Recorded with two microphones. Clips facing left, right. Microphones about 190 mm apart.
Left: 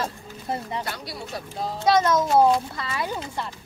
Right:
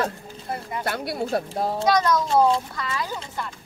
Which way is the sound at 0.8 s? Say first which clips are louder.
Right 7 dB; 55° right (ahead or behind).